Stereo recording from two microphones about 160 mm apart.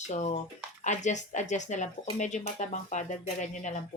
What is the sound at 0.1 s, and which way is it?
Speech, 45° left (ahead or behind).